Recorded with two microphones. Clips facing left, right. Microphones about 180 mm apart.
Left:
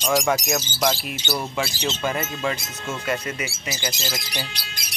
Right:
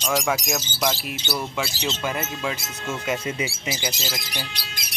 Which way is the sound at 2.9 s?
20° right (ahead or behind).